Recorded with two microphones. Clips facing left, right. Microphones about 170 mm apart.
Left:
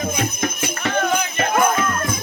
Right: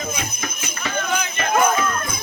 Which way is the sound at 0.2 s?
55° left (ahead or behind).